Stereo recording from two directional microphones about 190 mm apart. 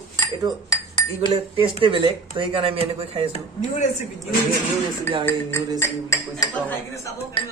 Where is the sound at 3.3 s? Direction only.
35° left (ahead or behind).